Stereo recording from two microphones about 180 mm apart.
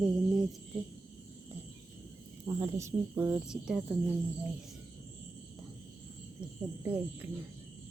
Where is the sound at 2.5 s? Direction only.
15° right (ahead or behind).